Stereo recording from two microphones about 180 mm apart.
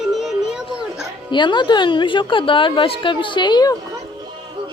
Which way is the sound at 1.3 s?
25° left (ahead or behind).